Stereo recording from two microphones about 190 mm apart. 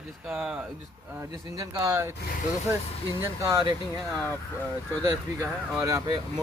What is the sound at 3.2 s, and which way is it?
Speech, 15° right (ahead or behind).